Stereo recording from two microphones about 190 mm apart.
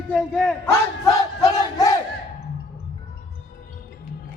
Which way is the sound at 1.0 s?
20° left (ahead or behind).